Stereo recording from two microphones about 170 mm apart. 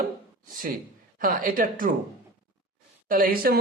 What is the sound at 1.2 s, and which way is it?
Speech, 55° right (ahead or behind).